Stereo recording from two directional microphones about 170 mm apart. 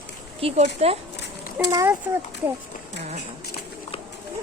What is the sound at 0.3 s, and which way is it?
Speech, 35° right (ahead or behind).